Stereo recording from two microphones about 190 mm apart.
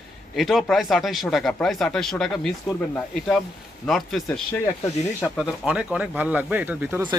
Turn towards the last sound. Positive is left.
turn(degrees=-10)  # may be behind; listen again after turning